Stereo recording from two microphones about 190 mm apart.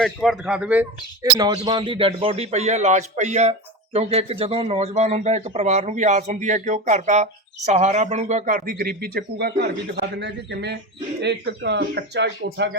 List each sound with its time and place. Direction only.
0.0 s a man's voice: centre (ahead or behind)
1.2 s a man's voice: 20° right (ahead or behind); by 12.5 s 60° right (ahead or behind)